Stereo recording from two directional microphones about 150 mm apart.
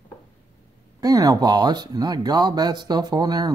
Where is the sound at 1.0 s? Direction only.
25° right (ahead or behind).